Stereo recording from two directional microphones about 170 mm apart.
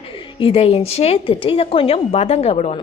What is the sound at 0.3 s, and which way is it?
A woman's voice, 35° left (ahead or behind).